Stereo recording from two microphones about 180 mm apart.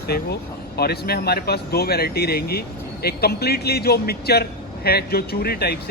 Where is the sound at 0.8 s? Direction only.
60° left (ahead or behind).